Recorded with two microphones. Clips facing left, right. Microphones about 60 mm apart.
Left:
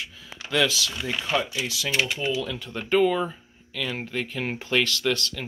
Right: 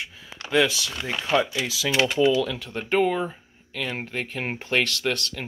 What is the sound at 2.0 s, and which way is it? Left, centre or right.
Speech, right.